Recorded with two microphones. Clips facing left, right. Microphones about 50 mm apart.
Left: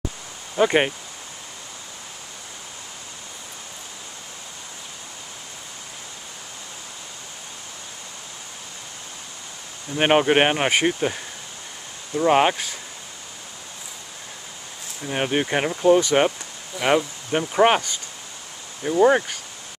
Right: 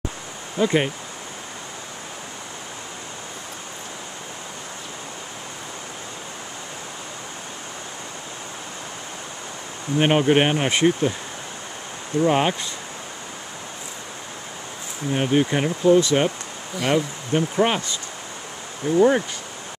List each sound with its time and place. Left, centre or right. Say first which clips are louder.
0.6 s speech: left 2 dB; left
9.9 s speech: even; left
12.3 s speech: left 4 dB; centre
15.0 s speech: right 3 dB; centre
18.9 s speech: even; centre